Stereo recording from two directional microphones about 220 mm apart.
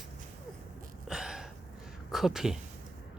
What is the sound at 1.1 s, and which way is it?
Gasp, centre (ahead or behind).